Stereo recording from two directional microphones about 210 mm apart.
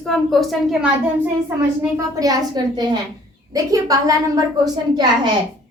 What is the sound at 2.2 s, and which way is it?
A child's voice, 20° right (ahead or behind).